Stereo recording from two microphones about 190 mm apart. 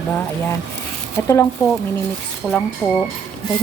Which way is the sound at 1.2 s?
15° left (ahead or behind).